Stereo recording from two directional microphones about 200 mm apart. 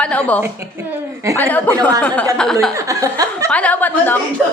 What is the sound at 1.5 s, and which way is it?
Speech, 10° left (ahead or behind).